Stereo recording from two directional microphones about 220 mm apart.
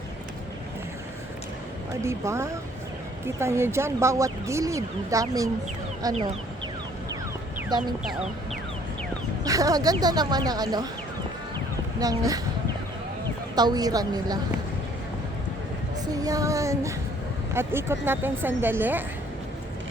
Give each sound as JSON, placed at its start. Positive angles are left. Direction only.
{"t": 2.0, "sound": "speech", "side_deg": -10}
{"t": 7.7, "sound": "speech", "side_deg": -20}
{"t": 9.4, "sound": "speech", "side_deg": -15}
{"t": 11.9, "sound": "speech", "side_deg": -15}
{"t": 13.6, "sound": "speech", "side_deg": -20}
{"t": 16.1, "sound": "speech", "side_deg": -15}